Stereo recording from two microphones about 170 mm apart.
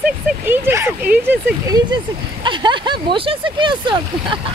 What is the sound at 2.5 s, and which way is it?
Speech, 30° right (ahead or behind).